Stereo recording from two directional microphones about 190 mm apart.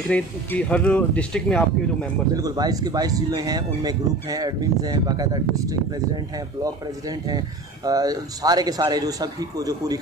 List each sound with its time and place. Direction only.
0.1 s speech: 5° left (ahead or behind)
2.3 s speech: 20° right (ahead or behind)